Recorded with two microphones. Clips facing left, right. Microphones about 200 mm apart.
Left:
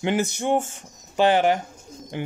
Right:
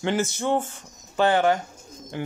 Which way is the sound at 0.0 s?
20° left (ahead or behind).